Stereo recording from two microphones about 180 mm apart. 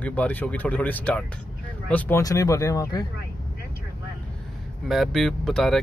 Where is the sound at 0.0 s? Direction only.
10° left (ahead or behind).